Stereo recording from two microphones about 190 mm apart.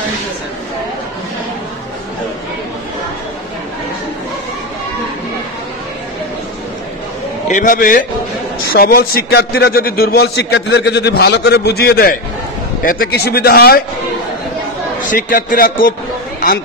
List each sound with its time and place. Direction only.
7.4 s a man's voice: 40° left (ahead or behind)
15.0 s a man's voice: 45° left (ahead or behind)